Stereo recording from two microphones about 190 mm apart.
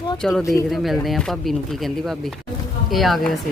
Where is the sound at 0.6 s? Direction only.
Centre (ahead or behind).